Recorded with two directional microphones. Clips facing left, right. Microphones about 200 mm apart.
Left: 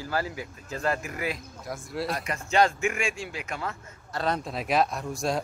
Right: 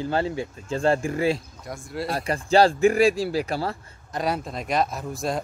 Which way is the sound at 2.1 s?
30° right (ahead or behind).